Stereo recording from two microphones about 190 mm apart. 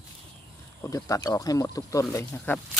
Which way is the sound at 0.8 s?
15° left (ahead or behind).